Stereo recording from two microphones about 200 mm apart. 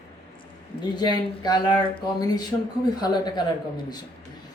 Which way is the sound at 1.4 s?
20° left (ahead or behind).